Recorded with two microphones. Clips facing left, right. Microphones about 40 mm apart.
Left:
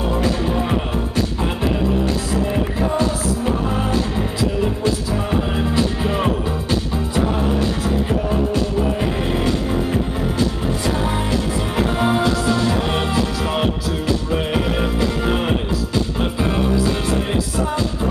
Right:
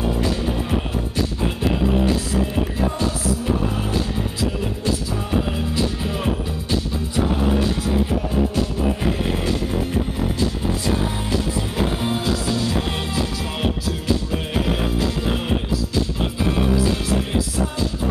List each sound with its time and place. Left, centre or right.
0.4 s music: left
5.6 s music: left
11.2 s music: left